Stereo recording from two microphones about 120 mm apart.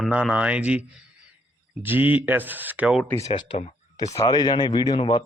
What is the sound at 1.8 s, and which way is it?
Speech, 15° right (ahead or behind).